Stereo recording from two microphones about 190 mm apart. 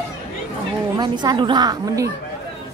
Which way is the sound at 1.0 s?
25° right (ahead or behind).